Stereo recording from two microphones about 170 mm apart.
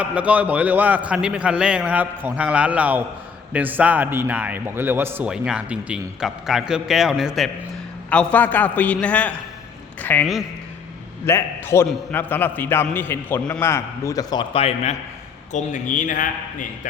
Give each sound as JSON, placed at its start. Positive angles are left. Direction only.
{"t": 0.0, "sound": "a man's voice", "side_deg": -10}
{"t": 11.3, "sound": "a man's voice", "side_deg": 15}
{"t": 15.5, "sound": "a man's voice", "side_deg": 50}